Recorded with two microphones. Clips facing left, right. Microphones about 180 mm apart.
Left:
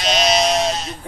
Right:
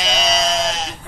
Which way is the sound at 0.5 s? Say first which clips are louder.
Left 2 dB; 90° right.